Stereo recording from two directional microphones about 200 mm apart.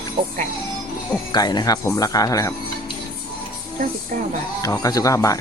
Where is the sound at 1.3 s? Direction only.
20° left (ahead or behind).